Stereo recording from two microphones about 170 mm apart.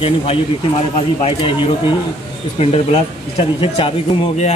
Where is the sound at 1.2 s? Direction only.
30° left (ahead or behind).